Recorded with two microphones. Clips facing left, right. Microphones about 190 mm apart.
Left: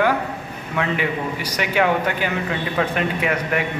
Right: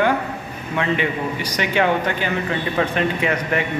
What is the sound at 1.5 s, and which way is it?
A man's voice, 5° left (ahead or behind).